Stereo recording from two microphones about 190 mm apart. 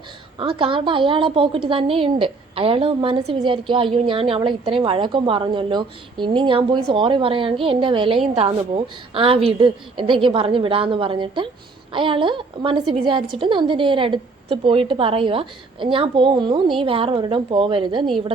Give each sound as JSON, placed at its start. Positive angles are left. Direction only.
{"t": 0.3, "sound": "a woman's voice", "side_deg": -25}